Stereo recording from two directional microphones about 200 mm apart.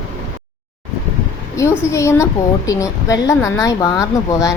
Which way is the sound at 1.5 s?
15° left (ahead or behind).